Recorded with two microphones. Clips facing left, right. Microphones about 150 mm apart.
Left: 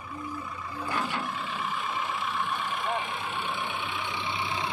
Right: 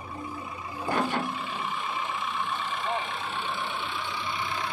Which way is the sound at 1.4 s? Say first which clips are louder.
Even; centre (ahead or behind).